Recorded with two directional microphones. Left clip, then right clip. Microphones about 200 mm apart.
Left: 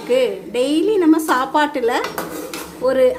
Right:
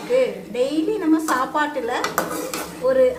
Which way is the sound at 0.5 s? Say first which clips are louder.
Left 5 dB; 50° left (ahead or behind).